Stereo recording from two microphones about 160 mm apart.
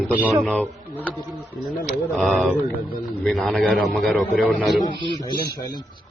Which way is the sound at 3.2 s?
5° left (ahead or behind).